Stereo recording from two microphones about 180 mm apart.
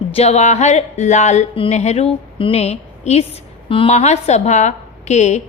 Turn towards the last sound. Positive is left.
turn(degrees=40)  # may be behind; listen again after turning